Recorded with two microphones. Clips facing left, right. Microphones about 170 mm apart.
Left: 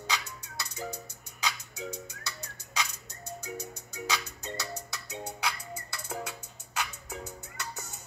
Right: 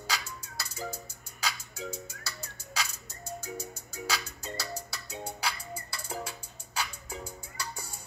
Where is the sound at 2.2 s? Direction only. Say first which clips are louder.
Left 1 dB; 35° right (ahead or behind).